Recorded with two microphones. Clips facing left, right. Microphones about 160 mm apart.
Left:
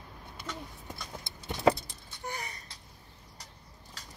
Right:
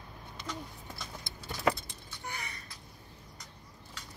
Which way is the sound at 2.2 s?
40° left (ahead or behind).